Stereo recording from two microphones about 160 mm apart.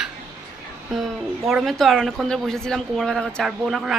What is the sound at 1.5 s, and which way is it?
A woman's voice, centre (ahead or behind).